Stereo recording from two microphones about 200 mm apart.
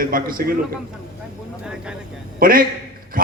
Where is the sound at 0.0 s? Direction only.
45° right (ahead or behind).